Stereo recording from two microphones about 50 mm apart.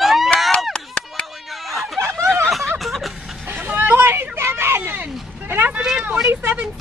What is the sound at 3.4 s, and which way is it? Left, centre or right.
Vehicle, right.